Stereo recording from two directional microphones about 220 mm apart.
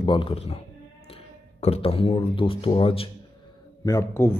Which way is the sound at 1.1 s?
30° left (ahead or behind).